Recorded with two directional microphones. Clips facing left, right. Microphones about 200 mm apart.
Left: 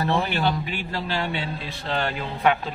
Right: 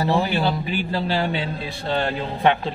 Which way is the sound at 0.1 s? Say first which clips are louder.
Right 3 dB; 35° right (ahead or behind).